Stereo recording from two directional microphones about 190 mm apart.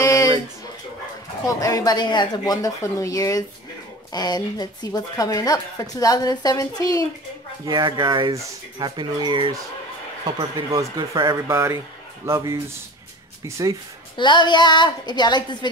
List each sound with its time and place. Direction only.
0.0 s a sound: 20° left (ahead or behind)
1.4 s speech: 20° left (ahead or behind)
7.6 s speech: 25° right (ahead or behind)
11.4 s speech: 15° right (ahead or behind)
14.1 s speech: 25° left (ahead or behind)